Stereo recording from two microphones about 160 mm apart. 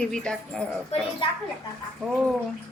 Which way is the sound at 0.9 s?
40° left (ahead or behind).